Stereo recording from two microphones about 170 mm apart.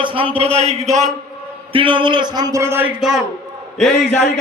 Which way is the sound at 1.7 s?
30° right (ahead or behind).